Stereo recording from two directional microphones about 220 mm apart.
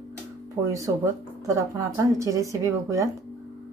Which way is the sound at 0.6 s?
15° right (ahead or behind).